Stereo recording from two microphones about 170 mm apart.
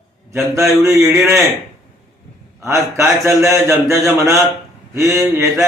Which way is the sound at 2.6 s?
15° right (ahead or behind).